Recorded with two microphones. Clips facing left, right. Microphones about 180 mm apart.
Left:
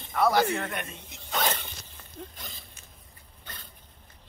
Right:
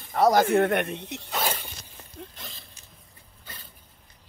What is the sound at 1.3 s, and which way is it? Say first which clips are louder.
Speech: left 1 dB; 10° right (ahead or behind).